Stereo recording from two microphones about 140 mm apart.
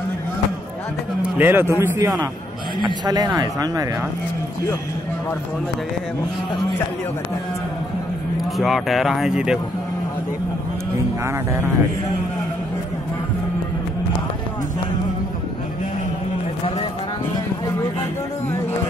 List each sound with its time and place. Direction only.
1.2 s a man's voice: 15° right (ahead or behind)
8.5 s speech: centre (ahead or behind)